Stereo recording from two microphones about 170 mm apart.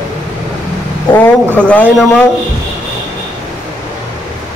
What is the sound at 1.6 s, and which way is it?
Speech, 5° left (ahead or behind).